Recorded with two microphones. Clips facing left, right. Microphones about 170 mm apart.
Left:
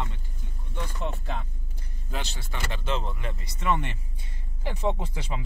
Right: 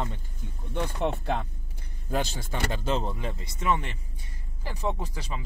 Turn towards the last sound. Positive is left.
turn(degrees=20)  # may be behind; listen again after turning